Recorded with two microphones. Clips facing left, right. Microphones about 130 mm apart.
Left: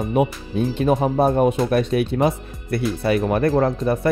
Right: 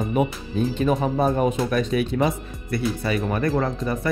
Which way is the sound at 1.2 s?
60° left (ahead or behind).